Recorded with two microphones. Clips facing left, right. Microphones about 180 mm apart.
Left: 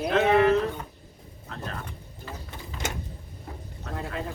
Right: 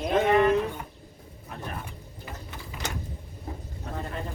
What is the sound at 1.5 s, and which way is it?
Pigeon, 15° right (ahead or behind).